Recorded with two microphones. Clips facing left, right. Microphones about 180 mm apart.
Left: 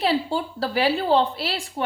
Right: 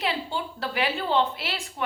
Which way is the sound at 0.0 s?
35° left (ahead or behind).